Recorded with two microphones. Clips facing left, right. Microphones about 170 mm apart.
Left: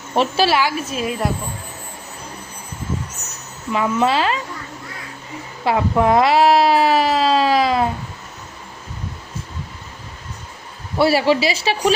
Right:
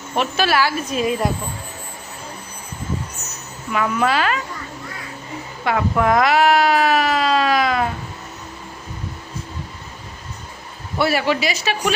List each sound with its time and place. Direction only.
0.1 s a woman's voice: 30° left (ahead or behind)
0.5 s a woman's voice: 10° left (ahead or behind)
3.7 s a woman's voice: 25° left (ahead or behind)
5.6 s speech: 25° left (ahead or behind)
10.9 s speech: 30° left (ahead or behind)